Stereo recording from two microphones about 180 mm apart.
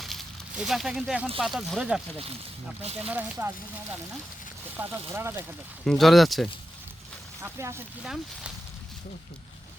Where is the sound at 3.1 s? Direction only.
10° right (ahead or behind).